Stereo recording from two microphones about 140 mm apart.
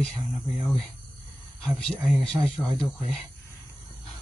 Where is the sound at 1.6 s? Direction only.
5° left (ahead or behind).